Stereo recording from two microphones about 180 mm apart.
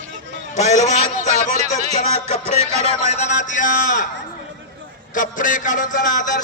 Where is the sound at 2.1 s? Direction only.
35° left (ahead or behind).